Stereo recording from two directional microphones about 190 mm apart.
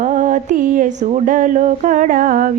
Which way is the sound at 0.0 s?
45° right (ahead or behind).